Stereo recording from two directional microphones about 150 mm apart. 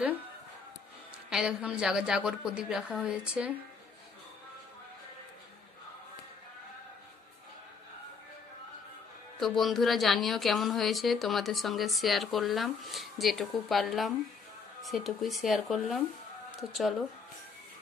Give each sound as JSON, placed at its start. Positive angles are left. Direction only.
{"t": 1.3, "sound": "speech", "side_deg": -5}
{"t": 9.4, "sound": "speech", "side_deg": 0}